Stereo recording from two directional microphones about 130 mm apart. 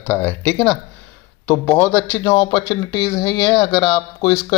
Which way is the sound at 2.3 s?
30° left (ahead or behind).